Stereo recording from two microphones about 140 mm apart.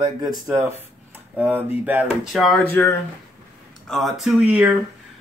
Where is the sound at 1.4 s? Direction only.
10° right (ahead or behind).